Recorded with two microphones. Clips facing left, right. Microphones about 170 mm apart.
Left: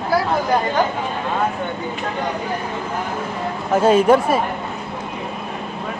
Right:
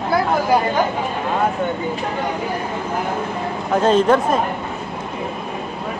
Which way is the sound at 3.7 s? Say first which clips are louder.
Left 1 dB; 10° left (ahead or behind).